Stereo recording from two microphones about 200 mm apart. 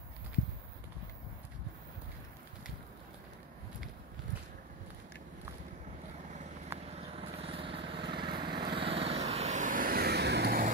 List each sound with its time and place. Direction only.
6.7 s vehicle: 15° right (ahead or behind)
7.2 s lawn mower: 30° right (ahead or behind); by 10.7 s 50° right (ahead or behind)